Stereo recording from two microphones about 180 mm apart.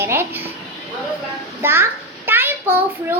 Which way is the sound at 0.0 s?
15° right (ahead or behind).